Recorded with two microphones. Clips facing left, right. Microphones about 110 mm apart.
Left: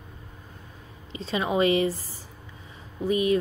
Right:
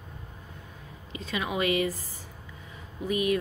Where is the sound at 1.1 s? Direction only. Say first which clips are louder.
Left 5 dB; 30° left (ahead or behind).